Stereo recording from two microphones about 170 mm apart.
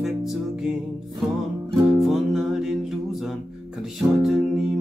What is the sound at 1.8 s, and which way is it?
Music, centre (ahead or behind).